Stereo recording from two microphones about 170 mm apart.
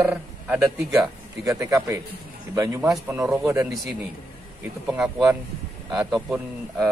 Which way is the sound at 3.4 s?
20° right (ahead or behind).